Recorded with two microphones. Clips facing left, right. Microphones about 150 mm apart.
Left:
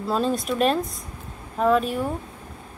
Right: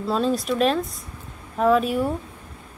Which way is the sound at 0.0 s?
Centre (ahead or behind).